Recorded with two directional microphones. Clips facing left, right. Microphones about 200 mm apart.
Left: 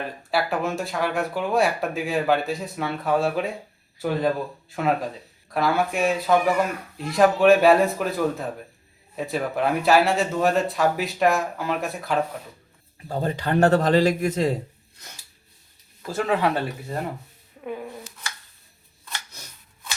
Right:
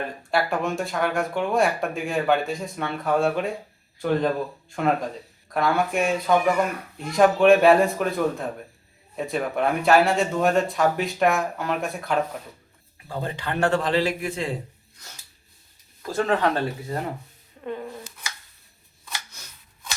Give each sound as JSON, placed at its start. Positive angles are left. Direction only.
{"t": 0.2, "sound": "speech", "side_deg": 0}
{"t": 13.1, "sound": "a man's voice", "side_deg": 40}
{"t": 16.0, "sound": "speech", "side_deg": 5}
{"t": 17.6, "sound": "speech", "side_deg": 5}